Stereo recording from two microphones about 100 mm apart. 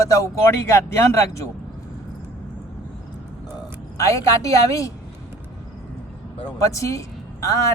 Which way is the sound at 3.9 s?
35° left (ahead or behind).